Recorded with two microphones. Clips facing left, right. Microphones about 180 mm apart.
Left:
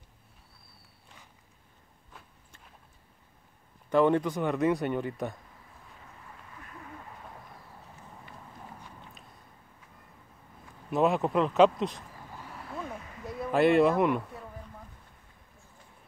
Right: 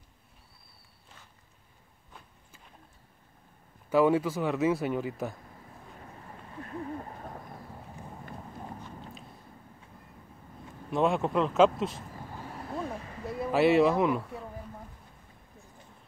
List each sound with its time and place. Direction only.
3.9 s speech: 5° right (ahead or behind)
6.2 s a sound: 35° right (ahead or behind)
10.9 s speech: centre (ahead or behind)
12.6 s vehicle: 35° right (ahead or behind)
13.4 s speech: 5° right (ahead or behind)